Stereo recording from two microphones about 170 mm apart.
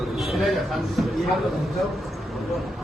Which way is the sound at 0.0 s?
Centre (ahead or behind).